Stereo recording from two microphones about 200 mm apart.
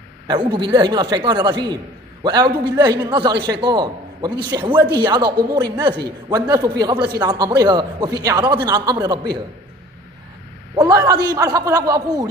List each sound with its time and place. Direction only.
0.3 s a man's voice: 25° right (ahead or behind)
10.8 s a man's voice: 20° right (ahead or behind)